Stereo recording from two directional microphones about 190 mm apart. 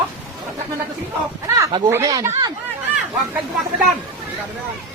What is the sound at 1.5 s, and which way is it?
Speech, 15° right (ahead or behind).